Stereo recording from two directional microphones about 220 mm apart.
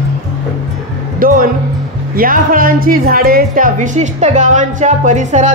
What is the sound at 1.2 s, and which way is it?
A woman's voice, 40° right (ahead or behind).